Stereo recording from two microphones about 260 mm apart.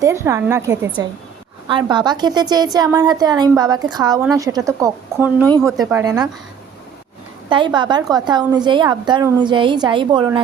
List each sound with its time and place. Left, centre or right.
0.0 s a woman's voice: centre
7.5 s a woman's voice: centre